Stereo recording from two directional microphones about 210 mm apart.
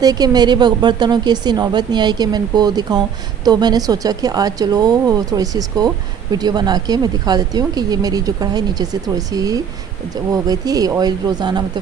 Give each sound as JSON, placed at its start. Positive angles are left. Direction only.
{"t": 0.0, "sound": "a woman's voice", "side_deg": -20}